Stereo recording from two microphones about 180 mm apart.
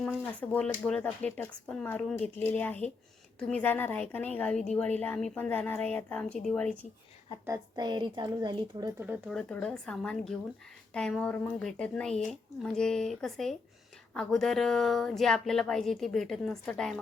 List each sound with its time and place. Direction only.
0.0 s a woman's voice: 5° left (ahead or behind)
7.4 s speech: 20° right (ahead or behind)
9.0 s speech: 10° right (ahead or behind)
9.3 s speech: 5° left (ahead or behind)